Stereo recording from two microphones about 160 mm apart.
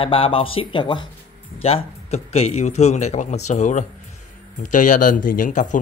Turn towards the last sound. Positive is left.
turn(degrees=50)  # may be behind; listen again after turning